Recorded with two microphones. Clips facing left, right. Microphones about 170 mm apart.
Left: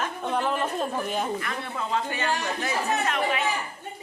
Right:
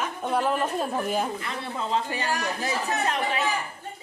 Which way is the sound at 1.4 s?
25° right (ahead or behind).